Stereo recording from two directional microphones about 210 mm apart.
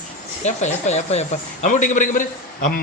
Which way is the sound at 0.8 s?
35° left (ahead or behind).